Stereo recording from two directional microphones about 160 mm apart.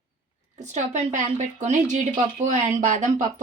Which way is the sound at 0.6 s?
45° right (ahead or behind).